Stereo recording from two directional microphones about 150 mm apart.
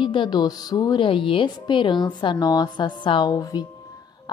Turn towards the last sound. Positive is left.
turn(degrees=25)  # may be behind; listen again after turning